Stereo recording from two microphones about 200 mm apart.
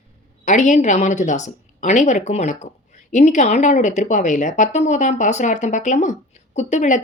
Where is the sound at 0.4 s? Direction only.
35° left (ahead or behind).